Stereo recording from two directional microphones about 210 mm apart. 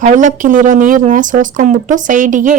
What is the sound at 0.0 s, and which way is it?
Speech, 35° right (ahead or behind).